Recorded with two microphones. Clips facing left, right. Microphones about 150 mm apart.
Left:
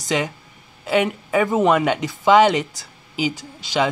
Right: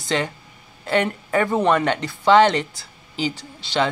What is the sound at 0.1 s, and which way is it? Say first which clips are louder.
Speech: left 1 dB; 10° left (ahead or behind).